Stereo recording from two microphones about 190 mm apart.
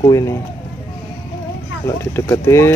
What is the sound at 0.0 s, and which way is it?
Speech, 15° left (ahead or behind).